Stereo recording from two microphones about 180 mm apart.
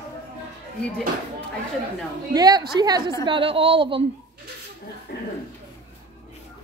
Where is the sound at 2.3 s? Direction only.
20° right (ahead or behind).